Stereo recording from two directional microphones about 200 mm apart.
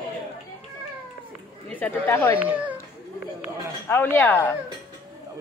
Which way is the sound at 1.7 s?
10° left (ahead or behind).